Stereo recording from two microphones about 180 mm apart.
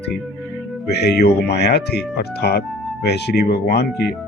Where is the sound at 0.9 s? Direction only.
65° left (ahead or behind).